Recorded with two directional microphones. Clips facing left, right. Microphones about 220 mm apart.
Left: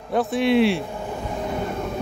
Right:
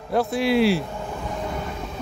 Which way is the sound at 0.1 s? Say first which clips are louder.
Left 1 dB; centre (ahead or behind).